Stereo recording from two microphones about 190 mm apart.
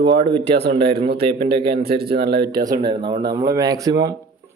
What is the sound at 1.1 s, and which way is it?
A man's voice, 50° right (ahead or behind).